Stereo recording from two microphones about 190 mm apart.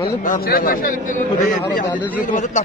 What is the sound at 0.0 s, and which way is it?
A man's voice, 50° left (ahead or behind).